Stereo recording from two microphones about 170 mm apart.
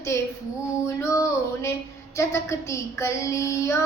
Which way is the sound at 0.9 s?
15° left (ahead or behind).